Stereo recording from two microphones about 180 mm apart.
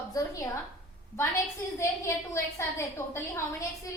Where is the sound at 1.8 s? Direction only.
15° left (ahead or behind).